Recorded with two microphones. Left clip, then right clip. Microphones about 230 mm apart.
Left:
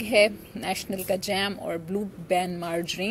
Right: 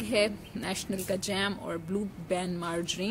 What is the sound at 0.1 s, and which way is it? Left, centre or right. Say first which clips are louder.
Speech: left 7 dB; centre.